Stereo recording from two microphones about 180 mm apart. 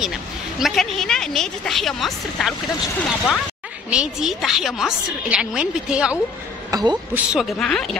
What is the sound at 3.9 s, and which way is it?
A woman's voice, centre (ahead or behind).